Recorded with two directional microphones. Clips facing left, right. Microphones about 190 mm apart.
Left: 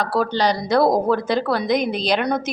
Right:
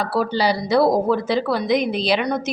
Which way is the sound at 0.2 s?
5° right (ahead or behind).